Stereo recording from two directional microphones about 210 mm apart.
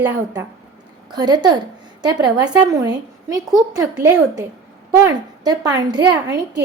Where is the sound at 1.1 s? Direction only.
20° right (ahead or behind).